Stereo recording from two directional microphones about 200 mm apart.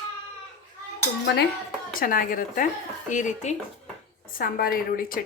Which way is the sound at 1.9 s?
45° left (ahead or behind).